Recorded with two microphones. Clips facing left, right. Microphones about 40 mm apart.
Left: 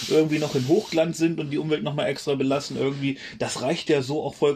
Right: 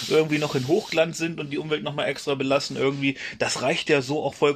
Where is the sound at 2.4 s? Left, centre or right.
Right.